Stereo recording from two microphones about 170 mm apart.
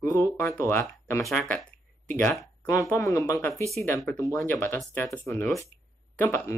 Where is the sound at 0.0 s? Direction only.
10° left (ahead or behind).